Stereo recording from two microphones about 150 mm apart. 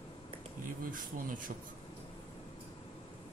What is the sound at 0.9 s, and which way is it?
Speech, 65° right (ahead or behind).